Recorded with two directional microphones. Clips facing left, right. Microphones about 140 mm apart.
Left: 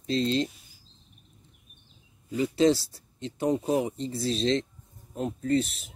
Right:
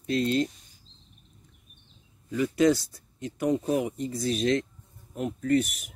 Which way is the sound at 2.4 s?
30° left (ahead or behind).